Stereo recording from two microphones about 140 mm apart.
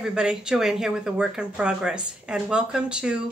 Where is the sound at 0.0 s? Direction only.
5° right (ahead or behind).